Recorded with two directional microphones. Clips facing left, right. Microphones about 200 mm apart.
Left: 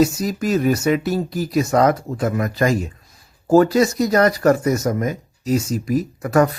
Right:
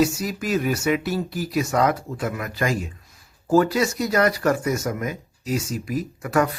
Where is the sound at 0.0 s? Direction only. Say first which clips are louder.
Left 4 dB; 40° left (ahead or behind).